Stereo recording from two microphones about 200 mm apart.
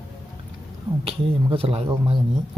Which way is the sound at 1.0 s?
25° right (ahead or behind).